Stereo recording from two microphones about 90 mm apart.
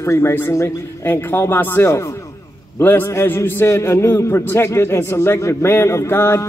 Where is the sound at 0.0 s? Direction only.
30° left (ahead or behind).